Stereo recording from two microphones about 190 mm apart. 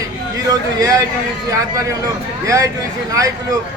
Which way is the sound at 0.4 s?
20° right (ahead or behind).